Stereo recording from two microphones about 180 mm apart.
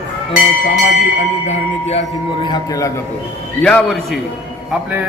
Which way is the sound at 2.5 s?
20° left (ahead or behind).